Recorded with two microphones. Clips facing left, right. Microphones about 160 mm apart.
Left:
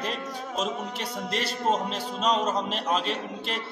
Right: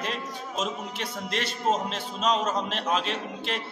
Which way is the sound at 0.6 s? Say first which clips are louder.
Left 1 dB; 35° left (ahead or behind).